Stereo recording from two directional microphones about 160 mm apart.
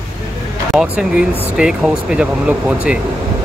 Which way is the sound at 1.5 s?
5° right (ahead or behind).